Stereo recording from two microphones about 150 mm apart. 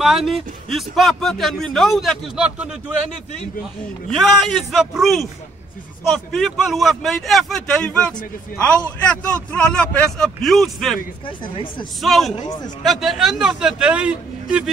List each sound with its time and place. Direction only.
0.0 s a man's voice: centre (ahead or behind)
4.1 s a man's voice: centre (ahead or behind)
11.2 s speech: 35° left (ahead or behind)
12.0 s a man's voice: centre (ahead or behind)
12.4 s speech: 25° left (ahead or behind)
12.8 s a man's voice: centre (ahead or behind)